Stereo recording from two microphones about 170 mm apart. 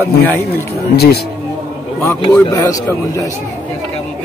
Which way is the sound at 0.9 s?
70° left (ahead or behind).